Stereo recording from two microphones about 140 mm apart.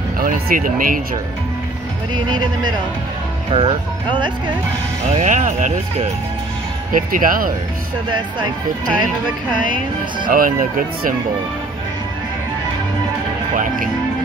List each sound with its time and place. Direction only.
0.2 s speech: 80° right
2.1 s speech: 30° right (ahead or behind)
5.1 s speech: 55° right (ahead or behind)
6.9 s speech: 80° right
10.2 s speech: 80° right